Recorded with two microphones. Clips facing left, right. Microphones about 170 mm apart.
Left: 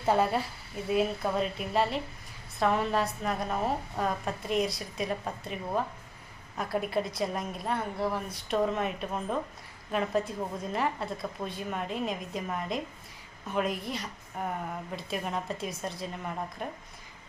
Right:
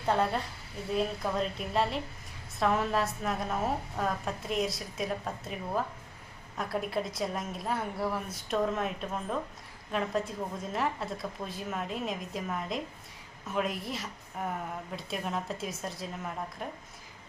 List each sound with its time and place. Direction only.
0.0 s a woman's voice: 5° left (ahead or behind)